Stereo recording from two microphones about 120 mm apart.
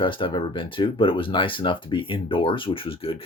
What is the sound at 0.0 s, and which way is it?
Speech, 45° left (ahead or behind).